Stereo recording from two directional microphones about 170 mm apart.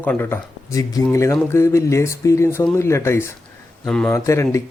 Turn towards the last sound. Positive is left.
turn(degrees=15)  # may be behind; listen again after turning